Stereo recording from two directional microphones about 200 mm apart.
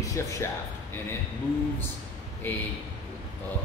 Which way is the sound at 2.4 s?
10° left (ahead or behind).